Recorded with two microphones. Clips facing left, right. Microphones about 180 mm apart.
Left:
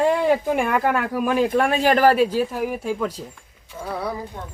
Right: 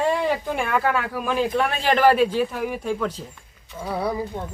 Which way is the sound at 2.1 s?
10° left (ahead or behind).